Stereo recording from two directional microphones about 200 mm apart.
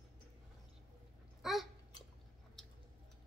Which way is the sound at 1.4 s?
Centre (ahead or behind).